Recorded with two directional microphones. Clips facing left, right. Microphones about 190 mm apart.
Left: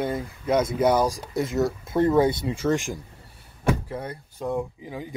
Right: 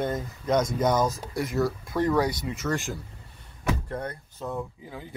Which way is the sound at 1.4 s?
25° left (ahead or behind).